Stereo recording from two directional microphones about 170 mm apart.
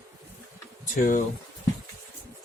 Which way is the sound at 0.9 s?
50° left (ahead or behind).